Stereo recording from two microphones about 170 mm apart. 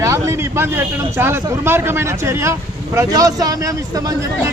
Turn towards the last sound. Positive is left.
turn(degrees=-20)  # may be behind; listen again after turning